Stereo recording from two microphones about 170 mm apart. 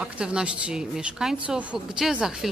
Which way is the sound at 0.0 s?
5° right (ahead or behind).